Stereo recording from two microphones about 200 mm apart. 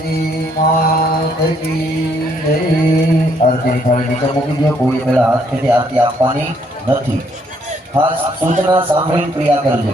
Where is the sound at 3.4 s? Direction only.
45° left (ahead or behind).